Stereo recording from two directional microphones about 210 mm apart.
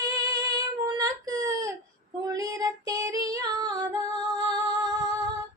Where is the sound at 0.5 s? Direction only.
15° right (ahead or behind).